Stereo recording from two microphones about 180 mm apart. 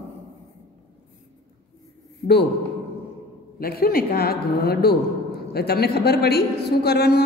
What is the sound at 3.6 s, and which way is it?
A woman's voice, 60° left (ahead or behind).